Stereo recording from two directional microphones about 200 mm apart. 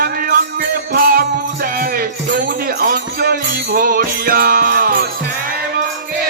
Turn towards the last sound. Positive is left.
turn(degrees=-45)  # may be behind; listen again after turning